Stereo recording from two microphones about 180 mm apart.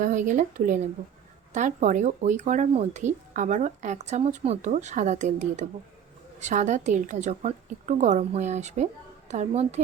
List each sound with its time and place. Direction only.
0.0 s a woman's voice: 45° right (ahead or behind)